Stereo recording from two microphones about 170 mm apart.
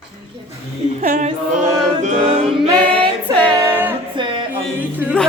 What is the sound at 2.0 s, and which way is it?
Music, 35° right (ahead or behind).